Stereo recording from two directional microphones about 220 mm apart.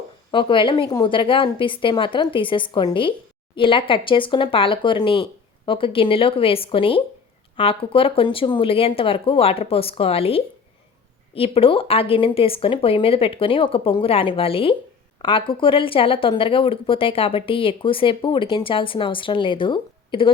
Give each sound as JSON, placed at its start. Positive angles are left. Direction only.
{"t": 0.3, "sound": "speech", "side_deg": 20}